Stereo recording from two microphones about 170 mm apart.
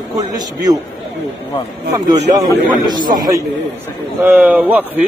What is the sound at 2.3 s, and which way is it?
Speech, 25° right (ahead or behind).